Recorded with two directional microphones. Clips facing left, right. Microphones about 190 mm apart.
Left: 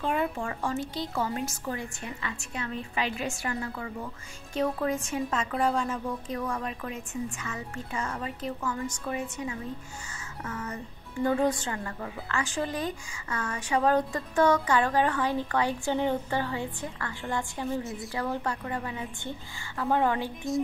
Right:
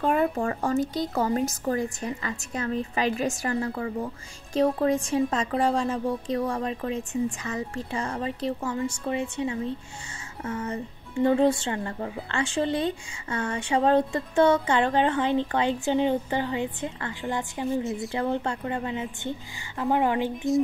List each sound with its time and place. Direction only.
0.0 s a woman's voice: 45° right (ahead or behind); by 20.3 s 15° right (ahead or behind)